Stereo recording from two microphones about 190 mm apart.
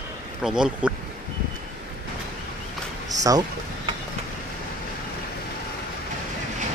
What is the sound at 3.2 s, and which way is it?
Speech, 20° right (ahead or behind).